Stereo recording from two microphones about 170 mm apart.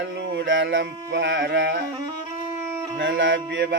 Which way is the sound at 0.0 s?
85° right.